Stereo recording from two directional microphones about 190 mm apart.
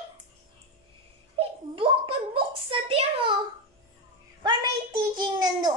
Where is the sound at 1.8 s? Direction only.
30° right (ahead or behind).